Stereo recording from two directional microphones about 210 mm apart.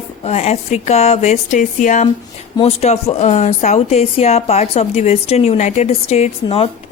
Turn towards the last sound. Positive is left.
turn(degrees=30)  # may be behind; listen again after turning